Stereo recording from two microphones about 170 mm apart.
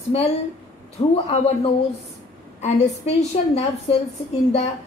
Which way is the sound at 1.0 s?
40° left (ahead or behind).